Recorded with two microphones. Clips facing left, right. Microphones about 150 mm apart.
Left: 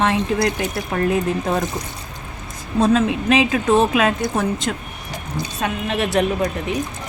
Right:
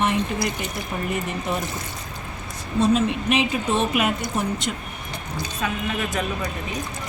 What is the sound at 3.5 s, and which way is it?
Speech, 90° left.